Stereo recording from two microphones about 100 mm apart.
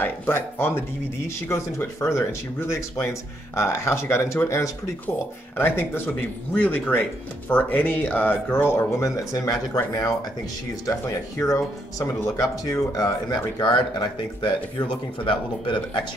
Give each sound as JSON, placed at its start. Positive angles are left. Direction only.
{"t": 0.0, "sound": "speech", "side_deg": 25}
{"t": 9.1, "sound": "speech", "side_deg": 35}
{"t": 10.9, "sound": "speech", "side_deg": 30}